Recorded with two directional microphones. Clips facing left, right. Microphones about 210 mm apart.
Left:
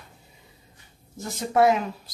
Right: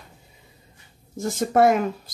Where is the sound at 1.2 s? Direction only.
50° right (ahead or behind).